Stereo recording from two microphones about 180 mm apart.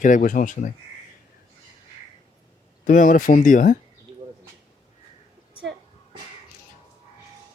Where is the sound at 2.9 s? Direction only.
45° left (ahead or behind).